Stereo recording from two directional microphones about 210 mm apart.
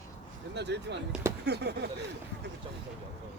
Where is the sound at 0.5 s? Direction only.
55° right (ahead or behind).